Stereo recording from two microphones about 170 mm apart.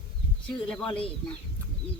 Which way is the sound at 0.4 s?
5° left (ahead or behind).